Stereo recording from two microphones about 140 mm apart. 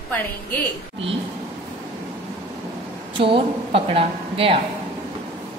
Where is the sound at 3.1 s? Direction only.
40° right (ahead or behind).